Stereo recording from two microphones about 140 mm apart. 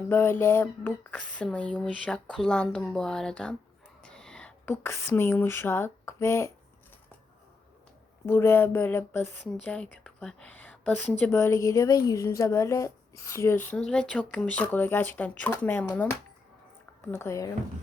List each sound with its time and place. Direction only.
0.1 s a woman's voice: 15° left (ahead or behind)
4.0 s a sound: 5° left (ahead or behind)
8.3 s a woman's voice: 15° left (ahead or behind)